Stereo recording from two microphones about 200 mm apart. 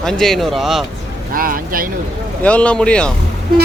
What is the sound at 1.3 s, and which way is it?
Speech, 45° right (ahead or behind).